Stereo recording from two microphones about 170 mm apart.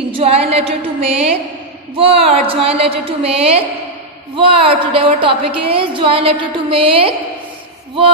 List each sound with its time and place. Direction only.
0.1 s a woman's voice: 35° right (ahead or behind)